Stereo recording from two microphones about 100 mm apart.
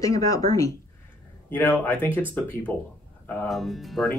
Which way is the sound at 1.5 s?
20° left (ahead or behind).